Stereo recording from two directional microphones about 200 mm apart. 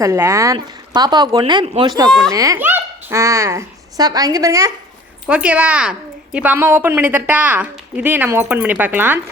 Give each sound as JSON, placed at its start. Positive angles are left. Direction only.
{"t": 0.0, "sound": "a child's voice", "side_deg": -15}
{"t": 5.3, "sound": "a woman's voice", "side_deg": -5}